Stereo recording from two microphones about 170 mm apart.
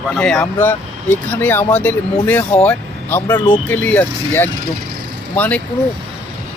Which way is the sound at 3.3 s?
25° left (ahead or behind).